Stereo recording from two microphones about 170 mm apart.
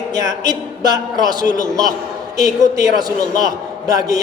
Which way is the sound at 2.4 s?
20° right (ahead or behind).